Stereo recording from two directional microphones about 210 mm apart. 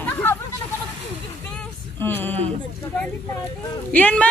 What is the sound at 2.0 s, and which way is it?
Speech, 10° left (ahead or behind).